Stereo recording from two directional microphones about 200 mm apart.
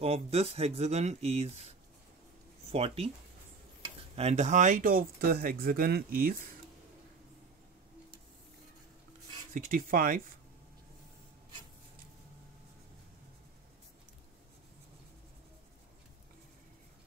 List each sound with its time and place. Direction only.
0.0 s speech: 30° right (ahead or behind)
2.7 s speech: 30° right (ahead or behind); by 6.3 s 50° right (ahead or behind)
9.5 s speech: 45° right (ahead or behind)